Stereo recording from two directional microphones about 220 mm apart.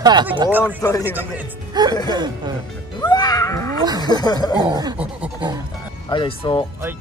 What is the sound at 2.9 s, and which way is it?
Music, 20° left (ahead or behind).